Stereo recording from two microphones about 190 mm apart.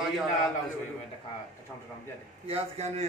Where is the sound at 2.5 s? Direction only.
35° right (ahead or behind).